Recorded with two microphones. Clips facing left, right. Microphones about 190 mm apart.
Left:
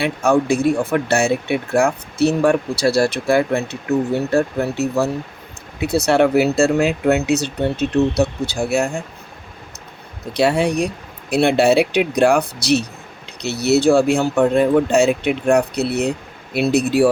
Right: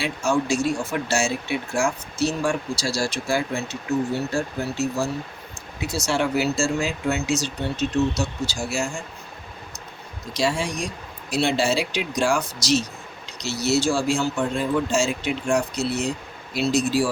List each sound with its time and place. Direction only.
0.0 s speech: 60° left (ahead or behind)
10.3 s speech: 60° left (ahead or behind)